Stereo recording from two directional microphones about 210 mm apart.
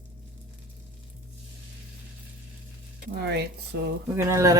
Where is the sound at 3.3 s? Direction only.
50° right (ahead or behind).